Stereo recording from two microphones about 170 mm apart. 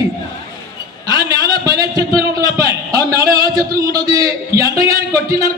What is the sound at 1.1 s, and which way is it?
A man's voice, 20° right (ahead or behind).